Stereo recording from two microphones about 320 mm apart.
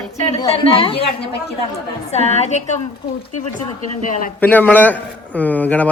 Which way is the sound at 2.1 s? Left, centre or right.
Centre.